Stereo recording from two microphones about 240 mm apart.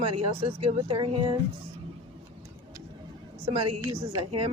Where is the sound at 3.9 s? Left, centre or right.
Right.